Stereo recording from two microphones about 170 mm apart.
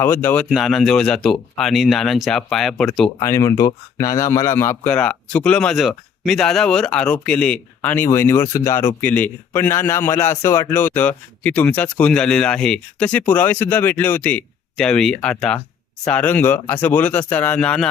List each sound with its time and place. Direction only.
0.0 s speech: 10° left (ahead or behind)
0.4 s speech: centre (ahead or behind)
3.2 s speech: 15° left (ahead or behind)